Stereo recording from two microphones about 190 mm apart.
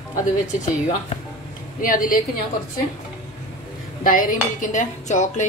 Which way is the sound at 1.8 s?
45° left (ahead or behind).